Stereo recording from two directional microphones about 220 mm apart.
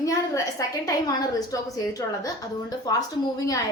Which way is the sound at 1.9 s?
15° left (ahead or behind).